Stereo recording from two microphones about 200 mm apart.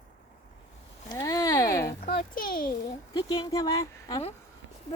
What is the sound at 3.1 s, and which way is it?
Speech, 20° left (ahead or behind).